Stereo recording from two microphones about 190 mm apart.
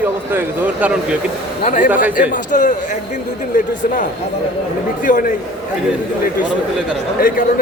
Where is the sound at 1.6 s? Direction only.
40° left (ahead or behind).